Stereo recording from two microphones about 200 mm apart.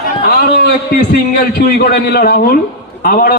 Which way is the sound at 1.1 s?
50° left (ahead or behind).